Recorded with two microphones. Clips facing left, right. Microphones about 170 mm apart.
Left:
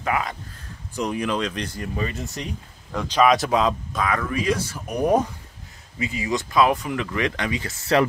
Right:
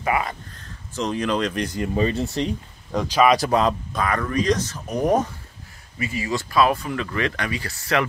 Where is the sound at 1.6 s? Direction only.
20° right (ahead or behind).